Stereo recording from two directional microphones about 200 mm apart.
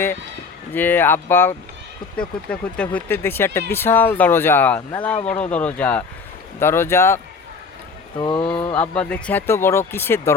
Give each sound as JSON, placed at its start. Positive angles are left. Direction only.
{"t": 0.7, "sound": "speech", "side_deg": 10}
{"t": 8.2, "sound": "speech", "side_deg": 20}
{"t": 8.7, "sound": "speech", "side_deg": 5}